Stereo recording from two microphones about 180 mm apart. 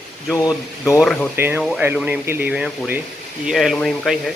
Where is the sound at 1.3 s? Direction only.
10° right (ahead or behind).